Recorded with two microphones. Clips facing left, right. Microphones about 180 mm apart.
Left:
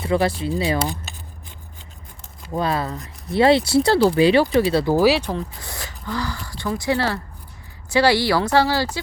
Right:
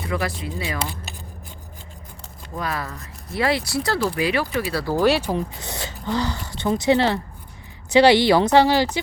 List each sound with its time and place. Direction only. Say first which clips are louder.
0.1 s speech: left 7 dB; 30° left (ahead or behind)
2.6 s speech: left 6 dB; 25° left (ahead or behind)
4.9 s speech: right 1 dB; centre (ahead or behind)
5.3 s speech: right 2 dB; 20° right (ahead or behind)